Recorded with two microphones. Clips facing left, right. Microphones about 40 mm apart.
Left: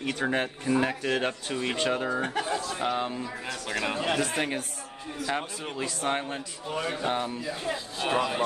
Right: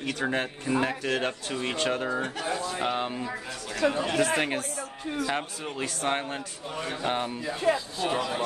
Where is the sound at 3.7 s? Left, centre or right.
Left.